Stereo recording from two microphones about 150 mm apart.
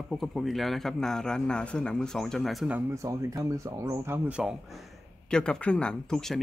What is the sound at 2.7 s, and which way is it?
Speech, 20° right (ahead or behind).